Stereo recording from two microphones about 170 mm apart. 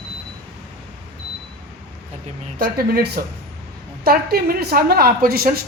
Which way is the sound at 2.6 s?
65° right (ahead or behind).